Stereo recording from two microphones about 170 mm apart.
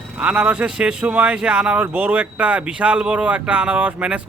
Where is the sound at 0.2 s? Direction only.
5° right (ahead or behind).